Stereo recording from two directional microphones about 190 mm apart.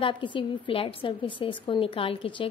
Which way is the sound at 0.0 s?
25° left (ahead or behind).